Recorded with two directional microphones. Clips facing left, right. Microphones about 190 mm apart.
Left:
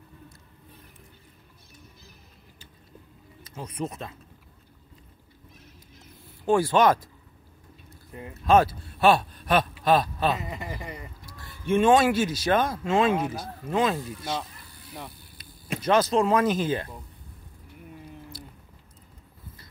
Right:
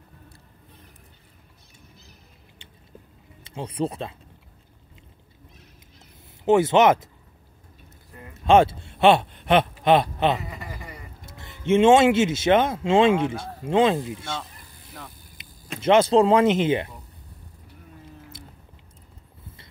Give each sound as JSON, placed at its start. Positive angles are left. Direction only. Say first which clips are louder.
{"t": 3.5, "sound": "speech", "louder": "right 6 dB", "side_deg": -30}
{"t": 6.4, "sound": "speech", "louder": "right 4 dB", "side_deg": -20}
{"t": 8.1, "sound": "speech", "louder": "left 5 dB", "side_deg": 20}
{"t": 8.5, "sound": "speech", "louder": "right 3 dB", "side_deg": -25}
{"t": 10.5, "sound": "speech", "louder": "left 3 dB", "side_deg": 20}
{"t": 11.2, "sound": "speech", "louder": "right 5 dB", "side_deg": -20}
{"t": 15.4, "sound": "a sound", "louder": "left 1 dB", "side_deg": -25}
{"t": 15.8, "sound": "speech", "louder": "right 5 dB", "side_deg": -25}